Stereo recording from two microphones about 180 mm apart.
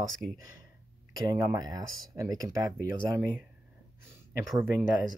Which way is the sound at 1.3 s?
20° right (ahead or behind).